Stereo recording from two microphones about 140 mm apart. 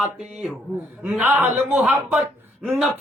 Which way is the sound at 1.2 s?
15° right (ahead or behind).